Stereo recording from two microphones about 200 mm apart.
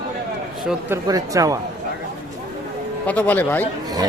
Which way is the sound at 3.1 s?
10° left (ahead or behind).